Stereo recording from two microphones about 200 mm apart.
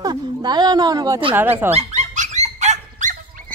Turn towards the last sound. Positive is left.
turn(degrees=-40)  # may be behind; listen again after turning